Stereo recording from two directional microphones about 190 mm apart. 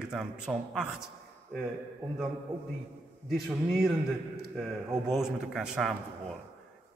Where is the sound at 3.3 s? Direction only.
Centre (ahead or behind).